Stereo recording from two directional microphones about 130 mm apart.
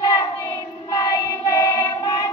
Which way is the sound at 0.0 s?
25° left (ahead or behind).